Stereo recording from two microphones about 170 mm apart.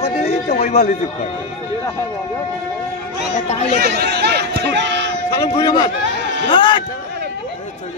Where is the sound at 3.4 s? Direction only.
40° left (ahead or behind).